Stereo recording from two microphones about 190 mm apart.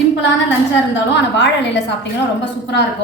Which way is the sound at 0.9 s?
65° left (ahead or behind).